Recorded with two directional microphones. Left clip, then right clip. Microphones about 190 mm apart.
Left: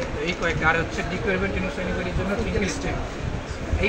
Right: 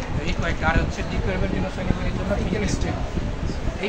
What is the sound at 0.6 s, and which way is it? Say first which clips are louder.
Speech: left 2 dB; 25° right (ahead or behind).